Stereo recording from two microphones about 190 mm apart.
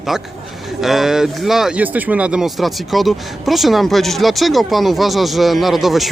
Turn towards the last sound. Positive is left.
turn(degrees=0)  # may be behind; listen again after turning